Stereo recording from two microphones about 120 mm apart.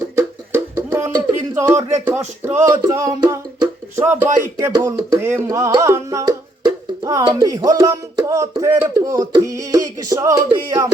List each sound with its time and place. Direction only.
0.2 s a sound: 20° right (ahead or behind)
2.0 s speech: 20° right (ahead or behind)
3.9 s speech: 20° right (ahead or behind)